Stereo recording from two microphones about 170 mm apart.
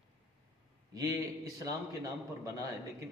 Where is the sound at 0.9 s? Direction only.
20° right (ahead or behind).